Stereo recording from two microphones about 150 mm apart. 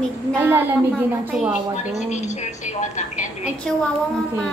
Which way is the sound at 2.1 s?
50° left (ahead or behind).